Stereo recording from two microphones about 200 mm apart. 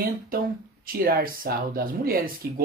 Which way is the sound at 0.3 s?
45° right (ahead or behind).